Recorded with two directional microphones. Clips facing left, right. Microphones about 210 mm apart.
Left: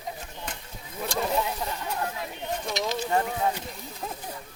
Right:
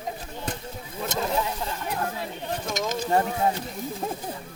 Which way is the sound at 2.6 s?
45° right (ahead or behind).